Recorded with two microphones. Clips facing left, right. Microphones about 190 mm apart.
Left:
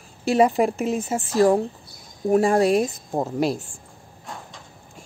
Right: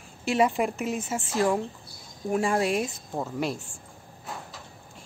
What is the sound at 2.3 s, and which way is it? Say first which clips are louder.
Speech: left 7 dB; 40° left (ahead or behind).